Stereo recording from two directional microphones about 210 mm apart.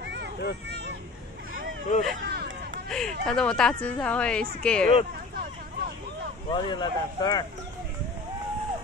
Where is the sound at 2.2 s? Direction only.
50° right (ahead or behind).